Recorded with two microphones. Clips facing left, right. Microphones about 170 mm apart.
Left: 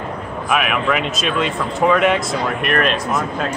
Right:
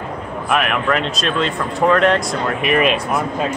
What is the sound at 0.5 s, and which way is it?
A man's voice, 5° left (ahead or behind).